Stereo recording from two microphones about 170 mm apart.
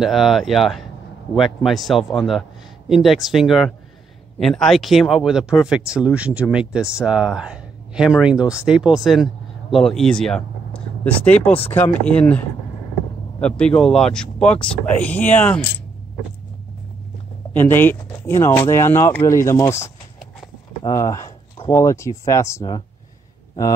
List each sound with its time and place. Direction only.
0.0 s speech: centre (ahead or behind)
17.6 s speech: 10° left (ahead or behind)